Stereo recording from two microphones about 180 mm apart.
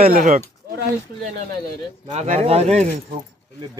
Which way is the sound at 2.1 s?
35° right (ahead or behind).